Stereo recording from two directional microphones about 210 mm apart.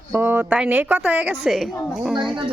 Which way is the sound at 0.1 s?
10° right (ahead or behind).